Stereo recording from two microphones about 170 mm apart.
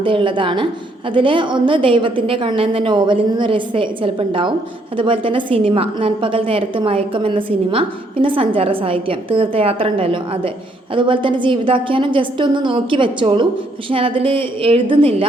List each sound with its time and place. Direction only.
0.0 s a woman's voice: 30° right (ahead or behind)